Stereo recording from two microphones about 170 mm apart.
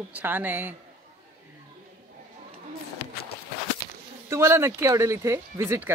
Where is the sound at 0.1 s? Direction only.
10° right (ahead or behind).